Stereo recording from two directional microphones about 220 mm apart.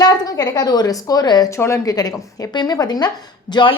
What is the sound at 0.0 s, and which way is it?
A woman's voice, 15° left (ahead or behind).